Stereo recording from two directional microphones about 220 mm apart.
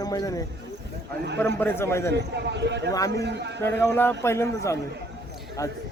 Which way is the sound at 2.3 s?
50° right (ahead or behind).